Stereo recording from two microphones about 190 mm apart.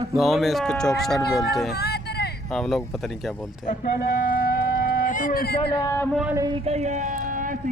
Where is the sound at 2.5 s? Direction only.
Centre (ahead or behind).